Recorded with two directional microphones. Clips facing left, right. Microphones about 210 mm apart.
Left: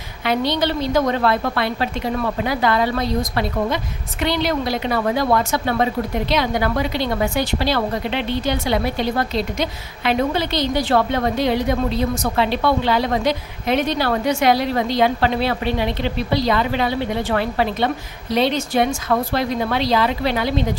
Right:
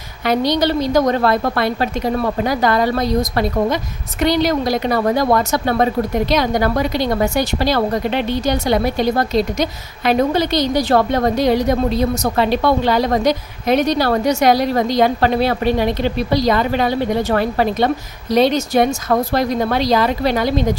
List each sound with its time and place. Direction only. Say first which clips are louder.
0.2 s a woman's voice: right 4 dB; 40° right (ahead or behind)